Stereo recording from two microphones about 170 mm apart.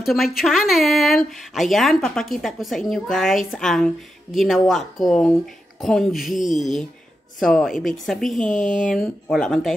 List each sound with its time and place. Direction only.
0.0 s speech: centre (ahead or behind)
8.5 s speech: 45° left (ahead or behind)
8.8 s speech: centre (ahead or behind)